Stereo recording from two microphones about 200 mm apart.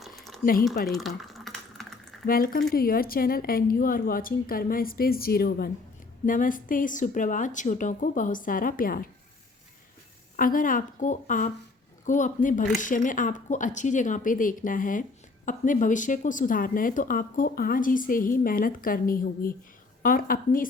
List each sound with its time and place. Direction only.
0.9 s a sound: centre (ahead or behind)
2.2 s a woman's voice: 45° left (ahead or behind)
10.3 s a woman's voice: 45° left (ahead or behind)